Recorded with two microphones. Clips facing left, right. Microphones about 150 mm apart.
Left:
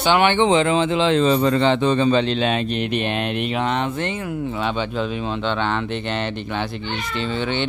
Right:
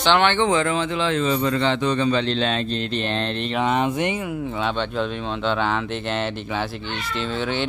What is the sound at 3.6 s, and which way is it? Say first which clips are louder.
Speech: right 5 dB; 10° right (ahead or behind).